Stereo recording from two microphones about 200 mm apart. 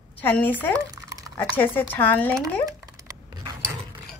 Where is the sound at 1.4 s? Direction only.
10° left (ahead or behind).